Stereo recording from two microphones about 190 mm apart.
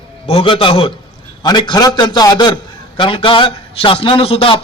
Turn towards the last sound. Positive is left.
turn(degrees=30)  # may be behind; listen again after turning